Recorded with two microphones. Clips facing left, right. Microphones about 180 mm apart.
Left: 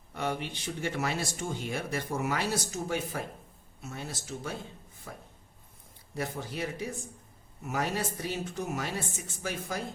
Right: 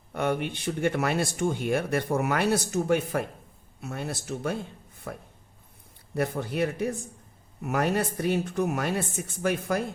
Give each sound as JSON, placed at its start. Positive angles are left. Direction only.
{"t": 0.1, "sound": "speech", "side_deg": -55}